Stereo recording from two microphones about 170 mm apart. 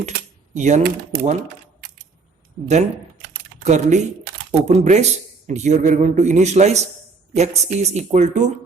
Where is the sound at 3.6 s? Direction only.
45° right (ahead or behind).